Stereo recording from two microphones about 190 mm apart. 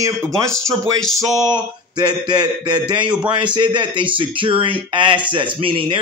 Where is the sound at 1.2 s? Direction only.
20° right (ahead or behind).